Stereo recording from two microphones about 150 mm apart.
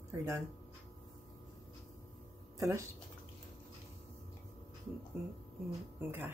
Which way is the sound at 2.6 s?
20° right (ahead or behind).